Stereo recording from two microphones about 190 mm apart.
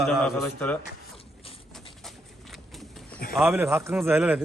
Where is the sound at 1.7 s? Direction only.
Centre (ahead or behind).